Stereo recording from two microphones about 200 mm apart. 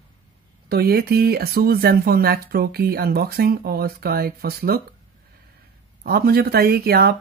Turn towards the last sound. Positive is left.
turn(degrees=-50)  # may be behind; listen again after turning